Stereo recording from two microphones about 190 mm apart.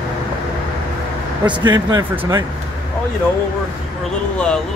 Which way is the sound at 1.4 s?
25° right (ahead or behind).